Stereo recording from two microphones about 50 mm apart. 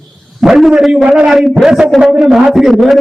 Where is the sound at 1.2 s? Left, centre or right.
Centre.